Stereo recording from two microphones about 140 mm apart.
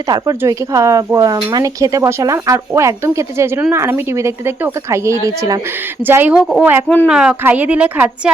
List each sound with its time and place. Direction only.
0.1 s a woman's voice: 25° right (ahead or behind)
6.8 s speech: 15° left (ahead or behind)
7.1 s a woman's voice: 5° right (ahead or behind)